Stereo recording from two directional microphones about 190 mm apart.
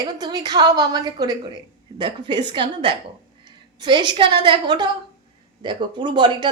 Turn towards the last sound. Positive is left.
turn(degrees=-25)  # may be behind; listen again after turning